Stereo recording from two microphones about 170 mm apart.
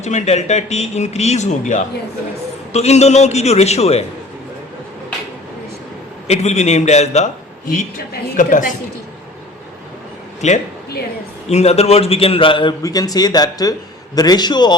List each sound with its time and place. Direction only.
0.0 s a man's voice: 40° left (ahead or behind)
6.2 s a man's voice: 40° left (ahead or behind)
8.4 s a woman's voice: 50° left (ahead or behind)
10.4 s a woman's voice: 45° left (ahead or behind); by 14.8 s 25° left (ahead or behind)